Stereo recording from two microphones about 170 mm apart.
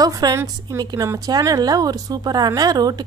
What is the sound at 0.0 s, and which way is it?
A woman's voice, 20° right (ahead or behind).